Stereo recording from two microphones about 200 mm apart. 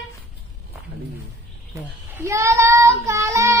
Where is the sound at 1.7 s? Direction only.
15° right (ahead or behind).